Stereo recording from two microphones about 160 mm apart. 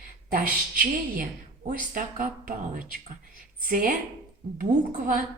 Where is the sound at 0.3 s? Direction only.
60° right (ahead or behind).